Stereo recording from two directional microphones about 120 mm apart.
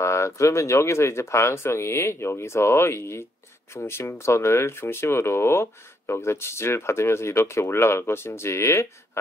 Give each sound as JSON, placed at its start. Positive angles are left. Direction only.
{"t": 0.0, "sound": "speech", "side_deg": 25}